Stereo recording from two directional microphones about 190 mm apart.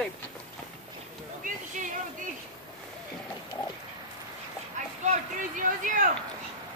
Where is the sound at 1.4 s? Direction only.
40° right (ahead or behind).